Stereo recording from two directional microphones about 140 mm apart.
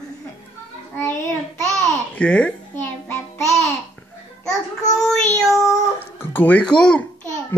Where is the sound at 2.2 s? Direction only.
5° left (ahead or behind).